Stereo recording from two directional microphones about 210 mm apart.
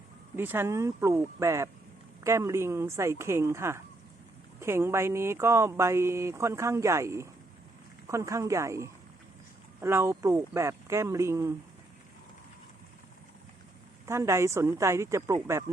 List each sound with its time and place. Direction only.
0.3 s speech: 10° right (ahead or behind)
14.1 s speech: 15° right (ahead or behind)